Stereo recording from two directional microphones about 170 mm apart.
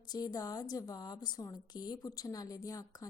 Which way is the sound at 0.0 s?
20° left (ahead or behind).